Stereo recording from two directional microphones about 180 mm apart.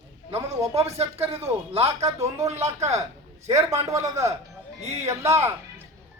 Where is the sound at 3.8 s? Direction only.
15° right (ahead or behind).